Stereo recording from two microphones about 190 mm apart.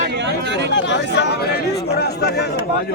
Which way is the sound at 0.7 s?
65° left (ahead or behind).